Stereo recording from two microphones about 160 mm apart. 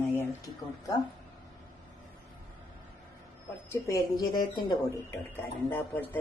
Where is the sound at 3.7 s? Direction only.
20° left (ahead or behind).